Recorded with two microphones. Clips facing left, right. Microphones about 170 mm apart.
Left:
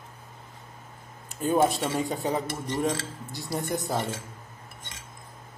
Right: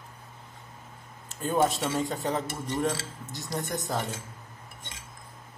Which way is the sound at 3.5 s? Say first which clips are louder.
Left 3 dB; centre (ahead or behind).